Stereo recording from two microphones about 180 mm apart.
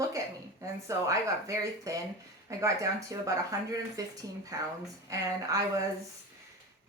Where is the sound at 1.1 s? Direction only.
15° right (ahead or behind).